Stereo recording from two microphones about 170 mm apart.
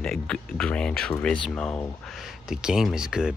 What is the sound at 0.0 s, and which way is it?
Speech, 5° left (ahead or behind).